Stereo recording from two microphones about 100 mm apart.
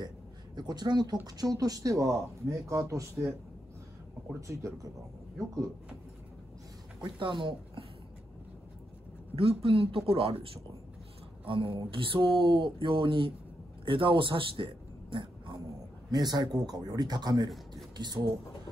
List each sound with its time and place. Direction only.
0.6 s speech: 45° right (ahead or behind)
7.0 s speech: 55° right (ahead or behind)
9.3 s speech: 75° right (ahead or behind); by 15.6 s 55° right (ahead or behind)
16.1 s speech: 45° right (ahead or behind)